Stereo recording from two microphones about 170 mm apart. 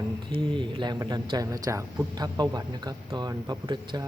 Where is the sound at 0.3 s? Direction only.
30° right (ahead or behind).